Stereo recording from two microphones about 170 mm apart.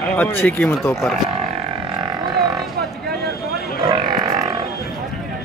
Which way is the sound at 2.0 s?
25° right (ahead or behind).